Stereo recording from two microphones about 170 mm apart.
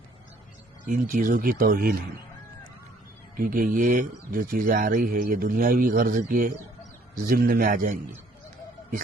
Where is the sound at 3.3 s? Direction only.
55° right (ahead or behind).